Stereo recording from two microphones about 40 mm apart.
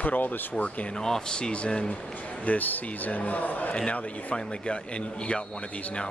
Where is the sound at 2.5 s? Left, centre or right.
Left.